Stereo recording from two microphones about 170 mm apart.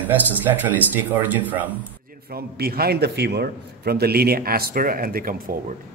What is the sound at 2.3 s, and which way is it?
A man's voice, 65° right (ahead or behind).